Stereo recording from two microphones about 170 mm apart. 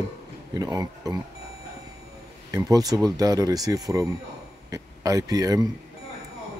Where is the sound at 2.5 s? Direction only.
20° right (ahead or behind).